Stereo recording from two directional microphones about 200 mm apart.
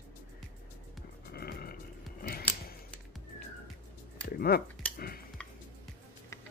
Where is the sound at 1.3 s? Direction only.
50° left (ahead or behind).